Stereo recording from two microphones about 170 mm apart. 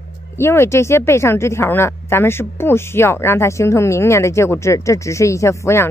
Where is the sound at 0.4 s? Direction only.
15° left (ahead or behind).